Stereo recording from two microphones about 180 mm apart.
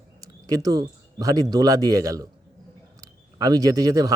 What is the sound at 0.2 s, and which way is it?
Speech, 20° right (ahead or behind).